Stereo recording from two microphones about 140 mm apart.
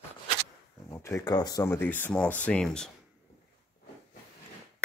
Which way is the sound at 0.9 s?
20° left (ahead or behind).